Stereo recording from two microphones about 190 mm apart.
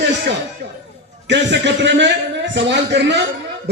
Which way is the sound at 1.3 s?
70° right (ahead or behind).